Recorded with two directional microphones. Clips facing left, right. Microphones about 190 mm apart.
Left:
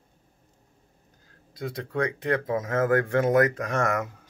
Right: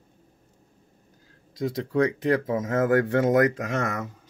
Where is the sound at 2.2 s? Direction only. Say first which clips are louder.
Right 2 dB; 25° right (ahead or behind).